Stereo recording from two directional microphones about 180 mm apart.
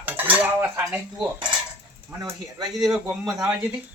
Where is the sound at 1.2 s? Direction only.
20° right (ahead or behind).